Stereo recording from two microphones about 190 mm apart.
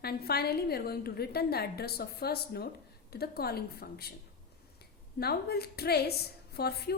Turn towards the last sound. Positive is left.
turn(degrees=55)  # may be behind; listen again after turning